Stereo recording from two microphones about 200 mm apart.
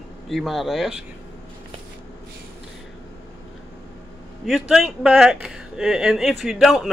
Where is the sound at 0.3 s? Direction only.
Centre (ahead or behind).